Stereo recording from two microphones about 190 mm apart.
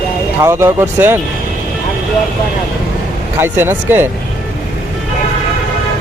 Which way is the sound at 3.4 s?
10° right (ahead or behind).